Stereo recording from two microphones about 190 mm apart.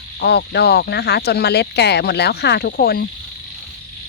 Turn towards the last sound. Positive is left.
turn(degrees=55)  # may be behind; listen again after turning